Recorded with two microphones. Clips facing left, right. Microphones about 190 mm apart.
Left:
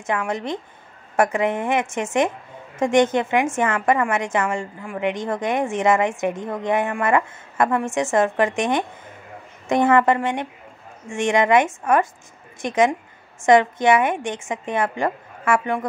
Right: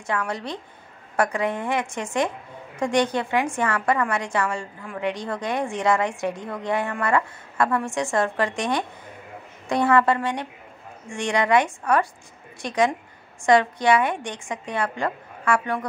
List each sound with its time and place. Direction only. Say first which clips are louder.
0.0 s a woman's voice: left 3 dB; 20° left (ahead or behind)